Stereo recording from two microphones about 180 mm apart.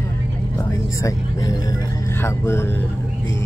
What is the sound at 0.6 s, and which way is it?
Speech, 20° left (ahead or behind).